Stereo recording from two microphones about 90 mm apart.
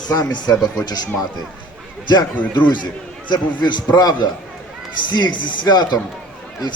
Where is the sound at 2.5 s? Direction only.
55° left (ahead or behind).